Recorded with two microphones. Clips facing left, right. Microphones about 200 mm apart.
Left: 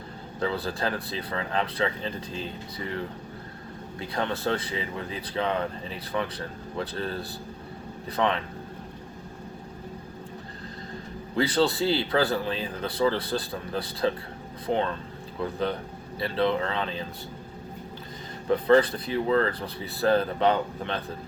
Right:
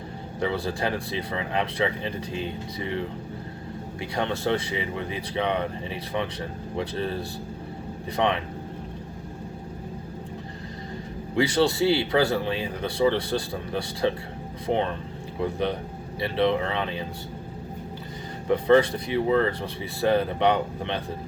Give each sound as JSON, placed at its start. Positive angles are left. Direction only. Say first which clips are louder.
{"t": 0.3, "sound": "speech", "louder": "right 2 dB", "side_deg": -15}
{"t": 4.1, "sound": "speech", "louder": "right 2 dB", "side_deg": -15}
{"t": 6.7, "sound": "speech", "louder": "right 3 dB", "side_deg": -15}
{"t": 11.3, "sound": "speech", "louder": "right 2 dB", "side_deg": -15}
{"t": 18.5, "sound": "speech", "louder": "right 1 dB", "side_deg": -15}